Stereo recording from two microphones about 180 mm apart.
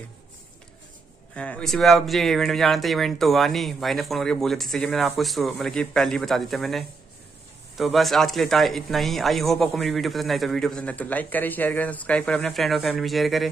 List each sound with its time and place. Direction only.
1.3 s speech: 5° left (ahead or behind)